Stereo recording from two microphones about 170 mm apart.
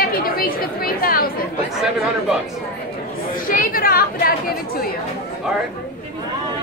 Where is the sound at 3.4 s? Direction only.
55° left (ahead or behind).